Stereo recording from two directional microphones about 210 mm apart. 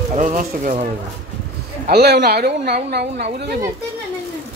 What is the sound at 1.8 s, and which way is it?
A woman's voice, 50° right (ahead or behind).